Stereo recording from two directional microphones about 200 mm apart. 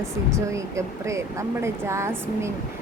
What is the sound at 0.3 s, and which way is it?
Speech, 15° right (ahead or behind).